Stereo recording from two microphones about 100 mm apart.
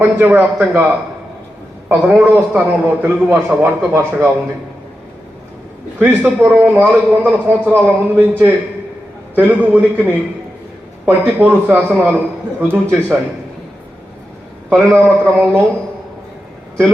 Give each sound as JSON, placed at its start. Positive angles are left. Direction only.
{"t": 0.0, "sound": "a man's voice", "side_deg": -15}
{"t": 6.0, "sound": "a man's voice", "side_deg": -20}
{"t": 14.7, "sound": "a man's voice", "side_deg": -20}